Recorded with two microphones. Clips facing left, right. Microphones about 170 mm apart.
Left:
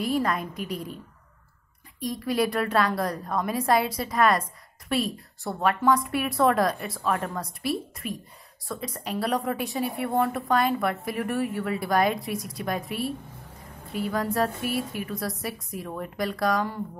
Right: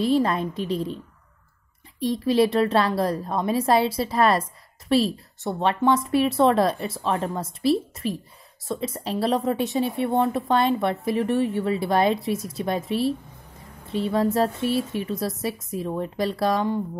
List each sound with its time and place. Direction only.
0.0 s a woman's voice: 30° right (ahead or behind)
2.0 s a woman's voice: 25° right (ahead or behind)